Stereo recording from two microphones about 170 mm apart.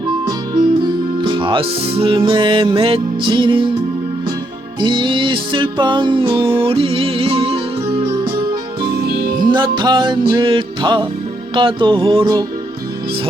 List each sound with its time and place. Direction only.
1.2 s music: 30° right (ahead or behind)
4.8 s music: 30° right (ahead or behind)
9.0 s music: 60° right (ahead or behind)
9.7 s music: 25° right (ahead or behind)